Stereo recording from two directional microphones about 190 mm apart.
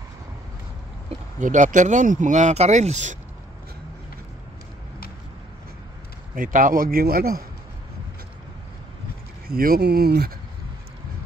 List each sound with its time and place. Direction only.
1.4 s speech: 40° right (ahead or behind)
6.3 s speech: 45° right (ahead or behind)
9.5 s speech: 50° right (ahead or behind)